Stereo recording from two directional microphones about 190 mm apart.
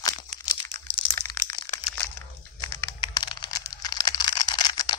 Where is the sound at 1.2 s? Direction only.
20° left (ahead or behind).